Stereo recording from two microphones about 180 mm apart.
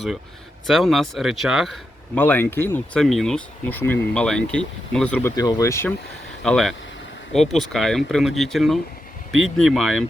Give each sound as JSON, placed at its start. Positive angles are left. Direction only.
{"t": 0.7, "sound": "speech", "side_deg": 0}
{"t": 2.1, "sound": "speech", "side_deg": 10}
{"t": 5.4, "sound": "speech", "side_deg": 20}
{"t": 6.4, "sound": "speech", "side_deg": 5}